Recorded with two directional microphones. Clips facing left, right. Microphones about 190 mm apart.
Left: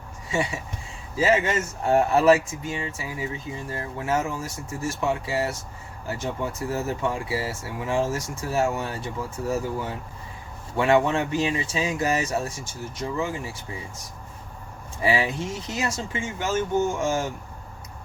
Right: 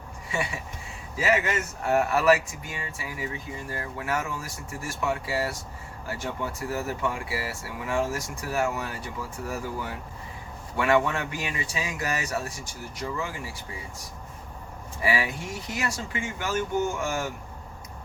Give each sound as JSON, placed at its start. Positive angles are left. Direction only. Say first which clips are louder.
{"t": 0.3, "sound": "speech", "louder": "left 4 dB", "side_deg": 25}
{"t": 10.8, "sound": "speech", "louder": "left 3 dB", "side_deg": 25}
{"t": 15.0, "sound": "speech", "louder": "left 4 dB", "side_deg": 25}